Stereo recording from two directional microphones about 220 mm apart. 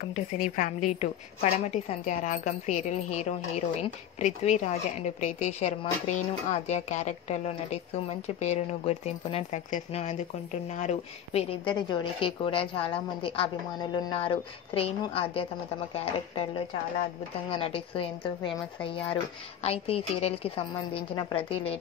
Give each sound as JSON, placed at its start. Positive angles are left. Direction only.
{"t": 0.1, "sound": "a woman's voice", "side_deg": 35}